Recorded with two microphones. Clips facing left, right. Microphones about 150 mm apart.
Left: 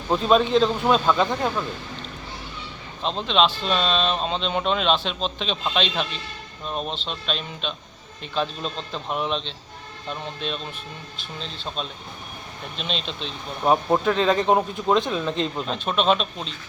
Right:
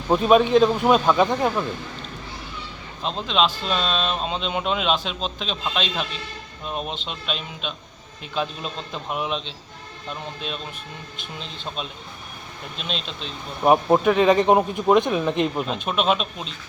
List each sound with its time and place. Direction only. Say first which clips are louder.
0.1 s speech: right 3 dB; 10° right (ahead or behind)
3.0 s speech: left 1 dB; 5° right (ahead or behind)
12.7 s speech: left 1 dB; centre (ahead or behind)